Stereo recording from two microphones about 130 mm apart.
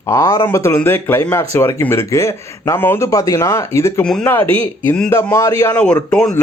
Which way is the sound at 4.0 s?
5° left (ahead or behind).